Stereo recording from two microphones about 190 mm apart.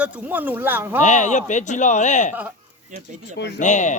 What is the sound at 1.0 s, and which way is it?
Speech, 40° left (ahead or behind).